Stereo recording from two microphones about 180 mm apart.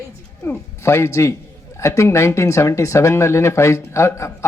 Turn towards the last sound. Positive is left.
turn(degrees=15)  # may be behind; listen again after turning